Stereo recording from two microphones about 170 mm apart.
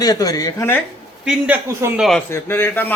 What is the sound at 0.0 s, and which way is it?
Speech, 20° left (ahead or behind).